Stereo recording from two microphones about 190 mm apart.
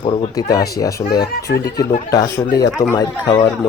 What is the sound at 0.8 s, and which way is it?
A man's voice, 20° left (ahead or behind).